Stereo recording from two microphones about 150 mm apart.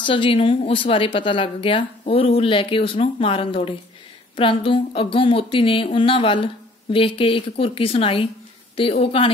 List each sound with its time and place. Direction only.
0.0 s speech: 35° left (ahead or behind)